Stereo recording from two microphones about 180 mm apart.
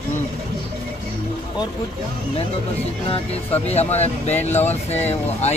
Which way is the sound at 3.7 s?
35° left (ahead or behind).